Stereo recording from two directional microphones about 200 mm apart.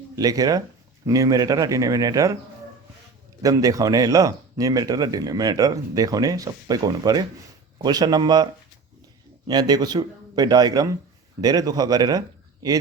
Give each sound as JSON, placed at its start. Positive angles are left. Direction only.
{"t": 0.2, "sound": "speech", "side_deg": -20}
{"t": 3.4, "sound": "speech", "side_deg": -15}
{"t": 9.5, "sound": "speech", "side_deg": -20}